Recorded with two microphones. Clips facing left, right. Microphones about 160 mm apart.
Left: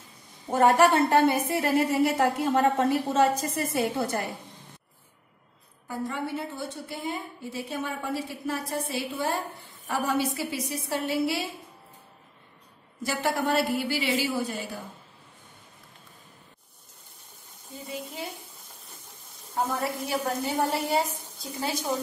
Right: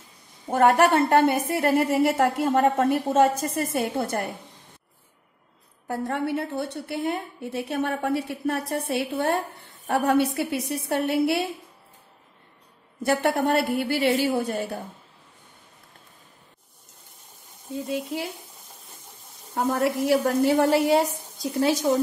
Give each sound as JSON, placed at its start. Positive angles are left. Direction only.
{"t": 0.6, "sound": "a woman's voice", "side_deg": -55}
{"t": 5.9, "sound": "a woman's voice", "side_deg": -65}
{"t": 13.0, "sound": "a woman's voice", "side_deg": -60}
{"t": 17.8, "sound": "a woman's voice", "side_deg": -75}
{"t": 19.7, "sound": "a woman's voice", "side_deg": -75}